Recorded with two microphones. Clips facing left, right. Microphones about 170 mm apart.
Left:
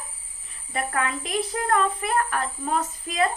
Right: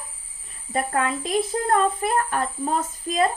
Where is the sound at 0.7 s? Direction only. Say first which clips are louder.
Right 3 dB; 35° right (ahead or behind).